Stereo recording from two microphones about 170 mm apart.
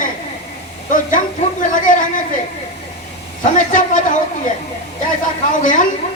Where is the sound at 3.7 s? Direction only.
50° left (ahead or behind).